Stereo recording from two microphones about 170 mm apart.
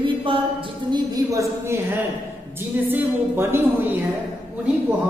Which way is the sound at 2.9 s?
10° right (ahead or behind).